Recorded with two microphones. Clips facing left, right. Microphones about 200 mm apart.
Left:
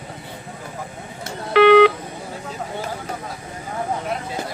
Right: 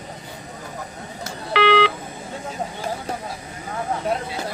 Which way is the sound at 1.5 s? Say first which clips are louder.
Left 7 dB; 50° left (ahead or behind).